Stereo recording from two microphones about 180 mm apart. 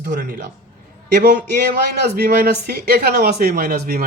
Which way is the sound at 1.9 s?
60° right (ahead or behind).